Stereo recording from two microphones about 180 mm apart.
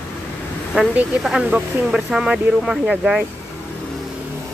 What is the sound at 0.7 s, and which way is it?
A woman's voice, 5° right (ahead or behind).